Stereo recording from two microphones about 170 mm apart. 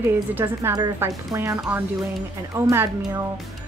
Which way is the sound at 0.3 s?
10° right (ahead or behind).